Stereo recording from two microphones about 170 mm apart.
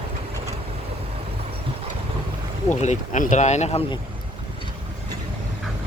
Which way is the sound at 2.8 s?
45° left (ahead or behind).